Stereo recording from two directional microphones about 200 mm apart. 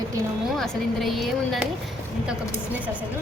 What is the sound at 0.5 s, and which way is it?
Speech, centre (ahead or behind).